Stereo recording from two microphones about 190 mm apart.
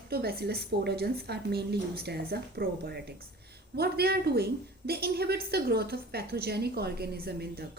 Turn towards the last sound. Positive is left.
turn(degrees=-55)  # may be behind; listen again after turning